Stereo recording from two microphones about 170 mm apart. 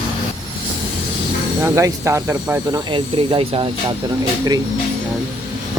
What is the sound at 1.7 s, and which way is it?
Speech, 20° right (ahead or behind).